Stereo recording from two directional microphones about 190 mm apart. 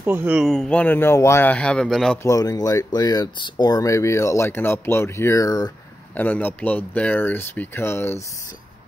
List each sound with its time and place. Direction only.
0.0 s speech: 10° right (ahead or behind)
2.2 s speech: 15° left (ahead or behind)